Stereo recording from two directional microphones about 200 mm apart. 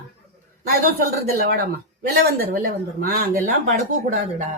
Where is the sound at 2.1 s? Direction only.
50° right (ahead or behind).